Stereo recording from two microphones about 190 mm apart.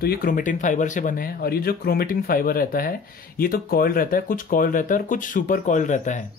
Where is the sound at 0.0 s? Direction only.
50° left (ahead or behind).